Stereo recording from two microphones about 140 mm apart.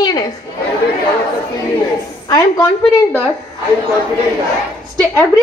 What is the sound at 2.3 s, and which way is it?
Speech, 25° left (ahead or behind).